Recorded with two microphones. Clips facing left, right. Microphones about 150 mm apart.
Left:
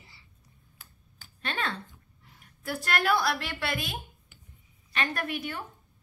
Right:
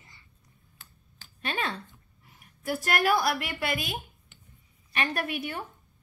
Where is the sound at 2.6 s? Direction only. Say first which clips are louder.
Right 2 dB; 20° right (ahead or behind).